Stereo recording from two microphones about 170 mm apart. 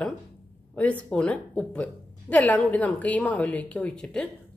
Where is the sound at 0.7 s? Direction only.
10° left (ahead or behind).